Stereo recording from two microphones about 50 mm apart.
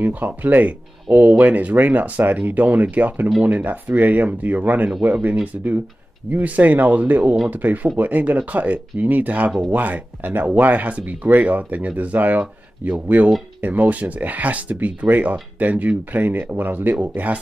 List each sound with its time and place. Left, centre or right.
0.0 s speech: right